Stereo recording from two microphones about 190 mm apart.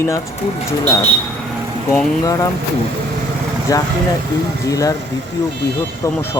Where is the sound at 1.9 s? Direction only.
15° left (ahead or behind).